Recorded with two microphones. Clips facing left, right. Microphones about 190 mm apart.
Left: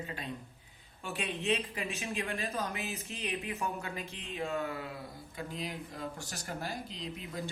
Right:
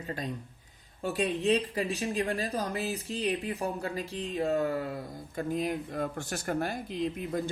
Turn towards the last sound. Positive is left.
turn(degrees=-50)  # may be behind; listen again after turning